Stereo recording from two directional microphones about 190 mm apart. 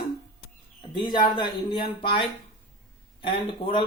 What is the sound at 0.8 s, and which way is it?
Speech, 25° left (ahead or behind).